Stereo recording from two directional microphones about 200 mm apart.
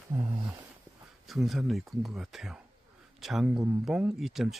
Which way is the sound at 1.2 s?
Centre (ahead or behind).